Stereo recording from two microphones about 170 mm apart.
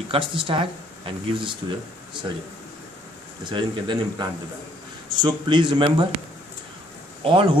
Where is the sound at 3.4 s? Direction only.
25° right (ahead or behind).